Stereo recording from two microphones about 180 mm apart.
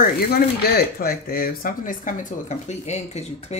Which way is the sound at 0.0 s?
60° left (ahead or behind).